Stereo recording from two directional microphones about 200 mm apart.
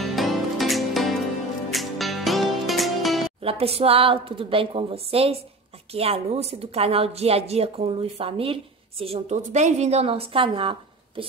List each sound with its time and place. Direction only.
0.0 s music: centre (ahead or behind)
3.4 s a woman's voice: 30° right (ahead or behind)